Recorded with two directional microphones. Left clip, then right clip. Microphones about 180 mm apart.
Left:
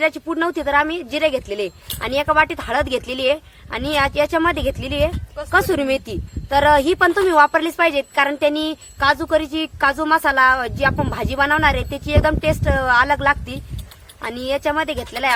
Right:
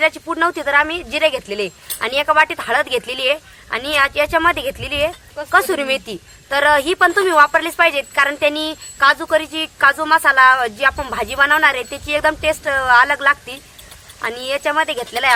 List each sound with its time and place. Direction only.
0.0 s a woman's voice: 50° left (ahead or behind)